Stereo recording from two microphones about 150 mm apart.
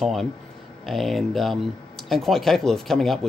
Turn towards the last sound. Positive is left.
turn(degrees=0)  # may be behind; listen again after turning